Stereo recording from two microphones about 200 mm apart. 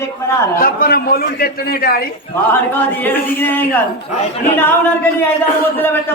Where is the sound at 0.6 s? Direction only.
50° left (ahead or behind).